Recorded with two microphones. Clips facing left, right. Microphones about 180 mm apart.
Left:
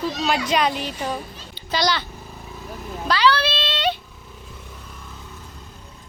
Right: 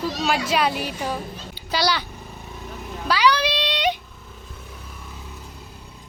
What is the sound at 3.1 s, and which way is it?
Cat, 10° right (ahead or behind).